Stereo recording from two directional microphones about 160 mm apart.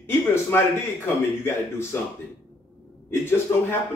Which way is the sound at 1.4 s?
15° left (ahead or behind).